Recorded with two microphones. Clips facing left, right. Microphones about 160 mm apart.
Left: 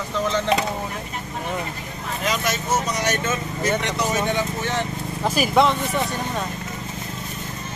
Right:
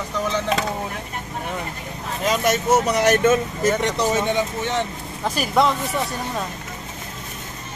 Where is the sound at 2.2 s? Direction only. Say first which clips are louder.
Right 5 dB; 55° right (ahead or behind).